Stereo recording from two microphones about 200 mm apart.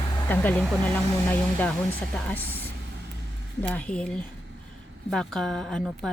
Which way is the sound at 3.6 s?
5° left (ahead or behind).